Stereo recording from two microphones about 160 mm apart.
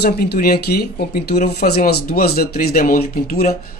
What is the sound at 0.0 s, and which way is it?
Speech, 85° left.